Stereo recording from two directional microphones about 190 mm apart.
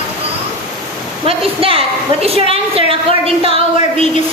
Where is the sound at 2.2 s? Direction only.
30° right (ahead or behind).